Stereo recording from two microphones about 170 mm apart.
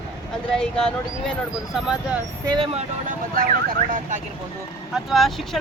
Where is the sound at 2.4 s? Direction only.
30° right (ahead or behind).